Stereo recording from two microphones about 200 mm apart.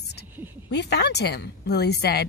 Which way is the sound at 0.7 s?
55° left (ahead or behind).